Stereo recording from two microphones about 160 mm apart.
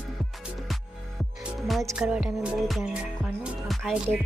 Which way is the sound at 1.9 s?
5° right (ahead or behind).